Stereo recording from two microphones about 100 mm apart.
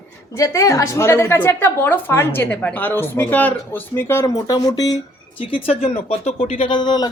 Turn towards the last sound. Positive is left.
turn(degrees=45)  # may be behind; listen again after turning